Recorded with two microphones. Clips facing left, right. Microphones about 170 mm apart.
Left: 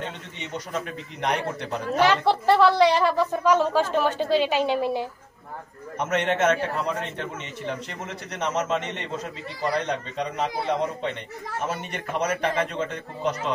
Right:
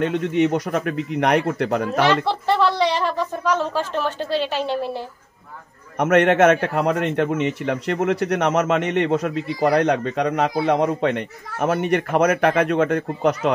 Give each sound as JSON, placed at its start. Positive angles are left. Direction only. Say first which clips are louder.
{"t": 0.0, "sound": "a man's voice", "louder": "right 17 dB", "side_deg": -65}
{"t": 2.2, "sound": "speech", "louder": "left 1 dB", "side_deg": 10}
{"t": 5.9, "sound": "a man's voice", "louder": "right 9 dB", "side_deg": -70}